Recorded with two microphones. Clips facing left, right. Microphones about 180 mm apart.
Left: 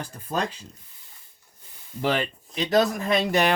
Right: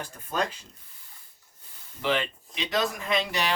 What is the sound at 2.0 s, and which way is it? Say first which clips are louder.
Speech: left 3 dB; 40° left (ahead or behind).